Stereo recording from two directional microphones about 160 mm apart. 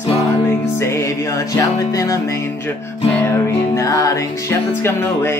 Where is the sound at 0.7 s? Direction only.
15° left (ahead or behind).